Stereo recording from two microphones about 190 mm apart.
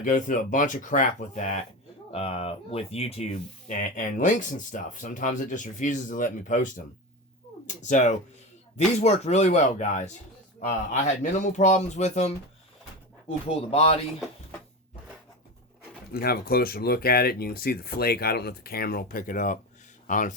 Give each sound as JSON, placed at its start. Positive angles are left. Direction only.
{"t": 0.0, "sound": "speech", "side_deg": 45}
{"t": 16.1, "sound": "speech", "side_deg": 55}